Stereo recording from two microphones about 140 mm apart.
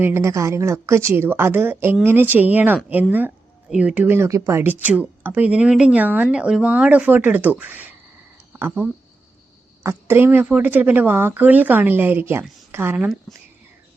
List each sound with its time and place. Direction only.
0.0 s a woman's voice: 20° right (ahead or behind)